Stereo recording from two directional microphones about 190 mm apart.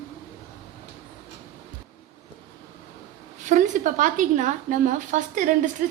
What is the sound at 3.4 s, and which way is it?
A woman's voice, 40° right (ahead or behind).